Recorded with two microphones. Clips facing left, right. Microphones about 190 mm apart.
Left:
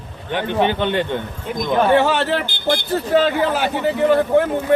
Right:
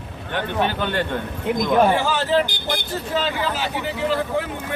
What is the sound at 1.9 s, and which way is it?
Speech, 65° left (ahead or behind).